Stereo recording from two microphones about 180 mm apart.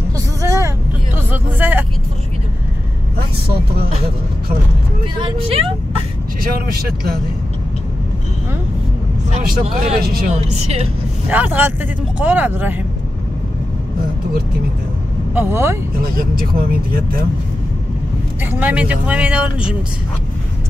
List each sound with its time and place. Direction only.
0.4 s vehicle: 15° right (ahead or behind)
5.2 s speech: 30° right (ahead or behind)
6.4 s speech: 60° right (ahead or behind)
9.4 s speech: 55° right (ahead or behind)
10.3 s speech: 35° right (ahead or behind)
11.2 s speech: 10° right (ahead or behind)
15.3 s speech: 15° right (ahead or behind)
16.0 s speech: 55° right (ahead or behind)
18.4 s speech: 10° right (ahead or behind)